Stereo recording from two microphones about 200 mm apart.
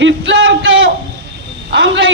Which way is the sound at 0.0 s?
65° right (ahead or behind).